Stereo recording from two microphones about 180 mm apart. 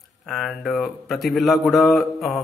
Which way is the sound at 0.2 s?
Centre (ahead or behind).